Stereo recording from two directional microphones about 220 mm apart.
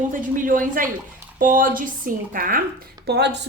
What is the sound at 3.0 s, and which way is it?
Speech, 50° right (ahead or behind).